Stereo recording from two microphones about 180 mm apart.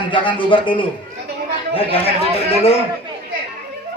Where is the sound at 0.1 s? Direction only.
25° left (ahead or behind).